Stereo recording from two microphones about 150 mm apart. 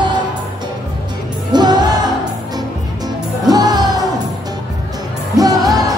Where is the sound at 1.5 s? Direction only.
30° right (ahead or behind).